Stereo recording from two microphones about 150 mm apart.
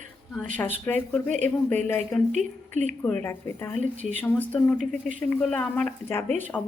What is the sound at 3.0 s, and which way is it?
Speech, 15° left (ahead or behind).